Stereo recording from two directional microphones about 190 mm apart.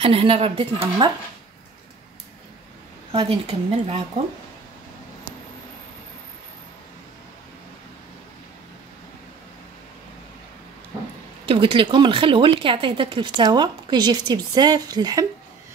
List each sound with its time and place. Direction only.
0.0 s speech: 30° right (ahead or behind)
3.1 s a woman's voice: 30° right (ahead or behind)
11.4 s speech: 25° right (ahead or behind)